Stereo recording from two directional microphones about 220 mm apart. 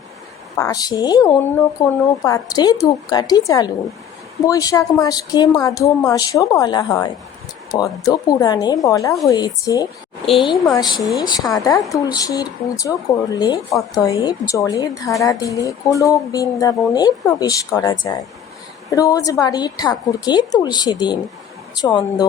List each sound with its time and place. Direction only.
0.6 s a woman's voice: 15° left (ahead or behind)